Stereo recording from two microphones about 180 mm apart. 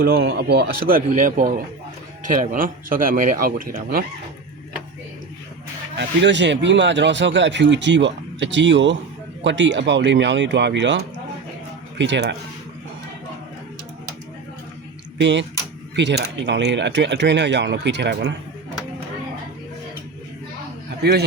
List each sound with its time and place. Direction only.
0.0 s speech: 60° right (ahead or behind)
6.0 s speech: 80° right
15.2 s speech: 80° right
21.0 s speech: 65° right (ahead or behind)